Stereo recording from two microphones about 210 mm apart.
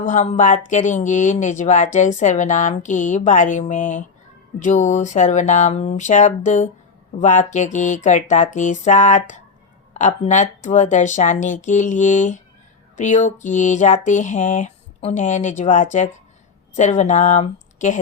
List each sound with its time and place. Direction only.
0.0 s speech: 35° left (ahead or behind)